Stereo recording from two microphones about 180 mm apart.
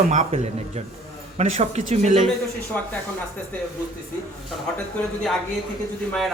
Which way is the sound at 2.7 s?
10° left (ahead or behind).